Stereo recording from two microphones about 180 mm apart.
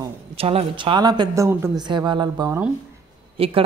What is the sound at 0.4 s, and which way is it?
A woman's voice, 30° right (ahead or behind).